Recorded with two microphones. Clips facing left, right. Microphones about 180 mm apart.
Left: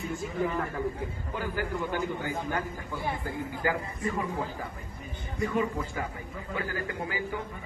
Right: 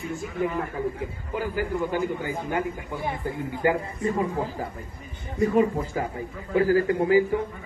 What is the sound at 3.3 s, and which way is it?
Speech, 25° right (ahead or behind).